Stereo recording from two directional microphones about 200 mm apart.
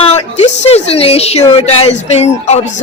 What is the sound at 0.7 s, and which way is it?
Speech, 30° left (ahead or behind).